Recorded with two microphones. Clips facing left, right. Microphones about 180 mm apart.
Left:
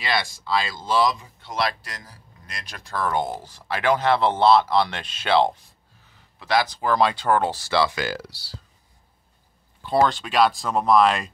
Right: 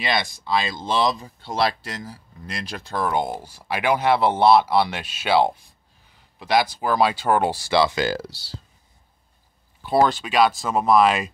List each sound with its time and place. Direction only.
0.0 s speech: 20° right (ahead or behind)
1.1 s speech: 35° right (ahead or behind)
9.8 s speech: 5° right (ahead or behind)